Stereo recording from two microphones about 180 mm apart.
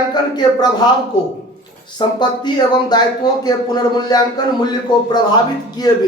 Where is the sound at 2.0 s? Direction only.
25° left (ahead or behind).